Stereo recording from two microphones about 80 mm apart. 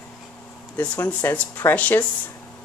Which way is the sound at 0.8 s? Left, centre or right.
Centre.